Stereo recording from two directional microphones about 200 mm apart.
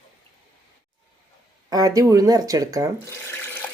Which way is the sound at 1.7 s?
20° right (ahead or behind).